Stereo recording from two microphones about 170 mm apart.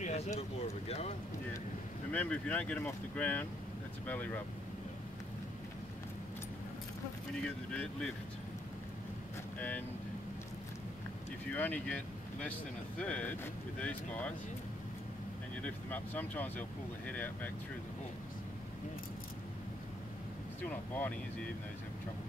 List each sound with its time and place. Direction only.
0.0 s speech: 40° left (ahead or behind)
2.1 s speech: 10° left (ahead or behind)
7.4 s speech: 5° left (ahead or behind)
9.6 s speech: 10° left (ahead or behind)
11.5 s speech: 10° left (ahead or behind)
15.5 s speech: 10° left (ahead or behind)
20.6 s speech: 10° left (ahead or behind)